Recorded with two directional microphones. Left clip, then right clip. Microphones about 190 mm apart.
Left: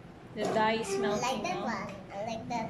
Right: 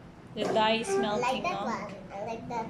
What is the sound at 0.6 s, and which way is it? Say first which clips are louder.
Speech: right 3 dB; 5° right (ahead or behind).